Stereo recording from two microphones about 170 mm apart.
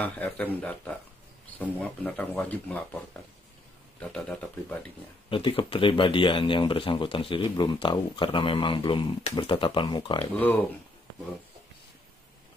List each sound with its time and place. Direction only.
0.0 s speech: 10° left (ahead or behind)
4.0 s speech: 5° left (ahead or behind)
5.3 s speech: 30° left (ahead or behind)
10.3 s speech: 10° left (ahead or behind)